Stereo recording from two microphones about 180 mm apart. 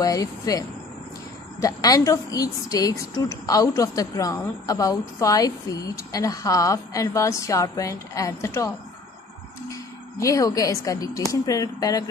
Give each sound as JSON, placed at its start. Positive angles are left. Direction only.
{"t": 0.0, "sound": "a woman's voice", "side_deg": 20}